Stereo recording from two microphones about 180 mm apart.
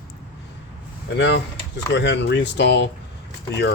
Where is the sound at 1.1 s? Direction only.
70° left (ahead or behind).